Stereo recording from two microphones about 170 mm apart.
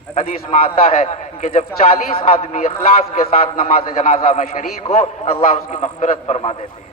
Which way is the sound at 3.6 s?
35° left (ahead or behind).